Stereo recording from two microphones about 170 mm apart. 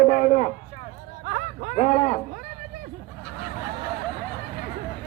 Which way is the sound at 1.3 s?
45° right (ahead or behind).